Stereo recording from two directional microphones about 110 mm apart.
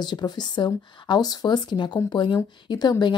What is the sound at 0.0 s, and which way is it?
A woman's voice, 40° left (ahead or behind).